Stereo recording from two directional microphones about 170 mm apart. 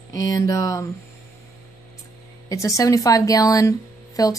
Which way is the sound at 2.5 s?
20° left (ahead or behind).